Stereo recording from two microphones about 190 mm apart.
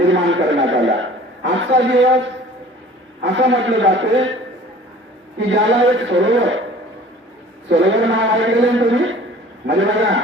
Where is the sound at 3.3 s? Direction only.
75° right (ahead or behind).